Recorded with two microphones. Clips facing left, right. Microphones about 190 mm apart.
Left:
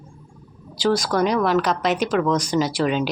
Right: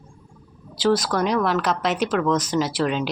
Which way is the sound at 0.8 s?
5° right (ahead or behind).